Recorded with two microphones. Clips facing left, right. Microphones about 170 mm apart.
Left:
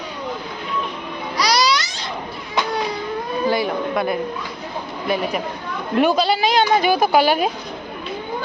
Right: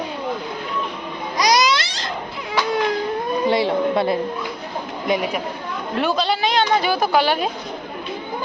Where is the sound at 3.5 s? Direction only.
25° right (ahead or behind).